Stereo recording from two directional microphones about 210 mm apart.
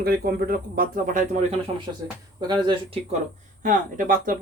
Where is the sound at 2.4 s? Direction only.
20° right (ahead or behind).